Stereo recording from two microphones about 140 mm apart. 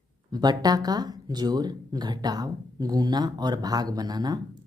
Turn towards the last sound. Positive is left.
turn(degrees=-30)  # may be behind; listen again after turning